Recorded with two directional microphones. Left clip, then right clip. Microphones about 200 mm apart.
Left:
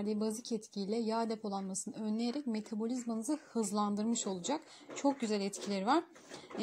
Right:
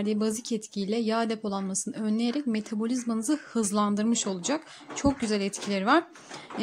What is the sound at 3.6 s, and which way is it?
Speech, 30° right (ahead or behind).